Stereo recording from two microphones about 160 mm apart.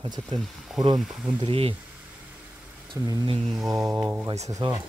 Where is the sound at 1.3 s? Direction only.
35° right (ahead or behind).